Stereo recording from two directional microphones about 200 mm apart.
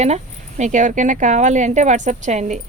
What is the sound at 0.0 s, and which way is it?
Speech, 35° right (ahead or behind).